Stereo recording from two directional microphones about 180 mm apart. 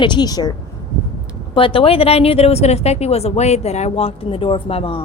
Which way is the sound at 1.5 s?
30° left (ahead or behind).